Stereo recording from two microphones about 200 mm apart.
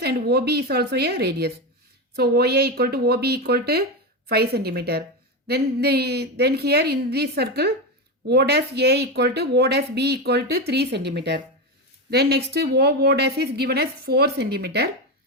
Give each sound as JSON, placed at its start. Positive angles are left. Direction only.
{"t": 0.0, "sound": "a woman's voice", "side_deg": -50}